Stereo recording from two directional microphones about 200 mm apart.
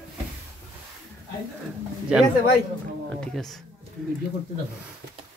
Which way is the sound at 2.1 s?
5° right (ahead or behind).